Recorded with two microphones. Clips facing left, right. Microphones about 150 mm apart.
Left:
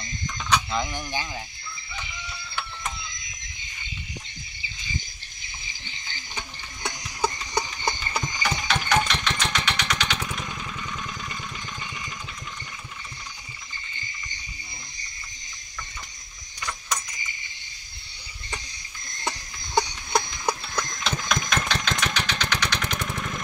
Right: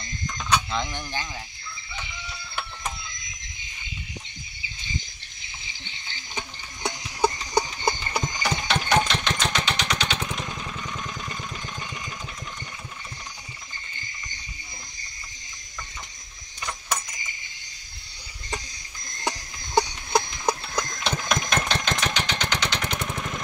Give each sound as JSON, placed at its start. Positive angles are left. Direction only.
{"t": 0.3, "sound": "chicken", "side_deg": -5}
{"t": 7.2, "sound": "engine", "side_deg": -25}
{"t": 9.4, "sound": "vehicle", "side_deg": -25}
{"t": 19.2, "sound": "a sound", "side_deg": -15}
{"t": 22.0, "sound": "vehicle", "side_deg": -25}